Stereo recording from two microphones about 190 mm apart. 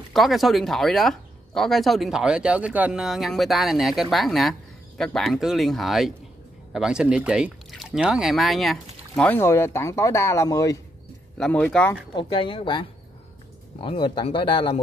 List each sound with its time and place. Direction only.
0.1 s speech: centre (ahead or behind); by 10.8 s 15° left (ahead or behind)
11.3 s speech: 5° left (ahead or behind)
12.2 s speech: 25° left (ahead or behind)